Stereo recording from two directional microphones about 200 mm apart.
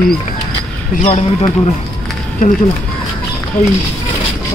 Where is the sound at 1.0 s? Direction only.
35° left (ahead or behind).